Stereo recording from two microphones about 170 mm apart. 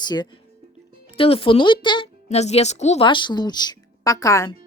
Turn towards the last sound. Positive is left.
turn(degrees=20)  # may be behind; listen again after turning